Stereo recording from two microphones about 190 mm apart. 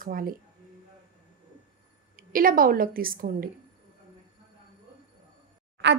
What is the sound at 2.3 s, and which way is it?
Speech, 50° right (ahead or behind).